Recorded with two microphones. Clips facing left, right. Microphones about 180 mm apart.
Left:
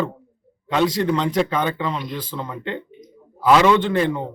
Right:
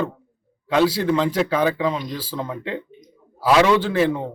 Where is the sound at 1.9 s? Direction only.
40° right (ahead or behind).